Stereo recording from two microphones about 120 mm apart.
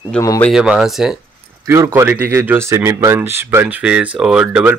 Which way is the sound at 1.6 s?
25° right (ahead or behind).